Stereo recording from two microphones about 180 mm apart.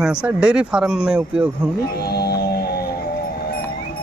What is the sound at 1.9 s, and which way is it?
Music, 60° left (ahead or behind).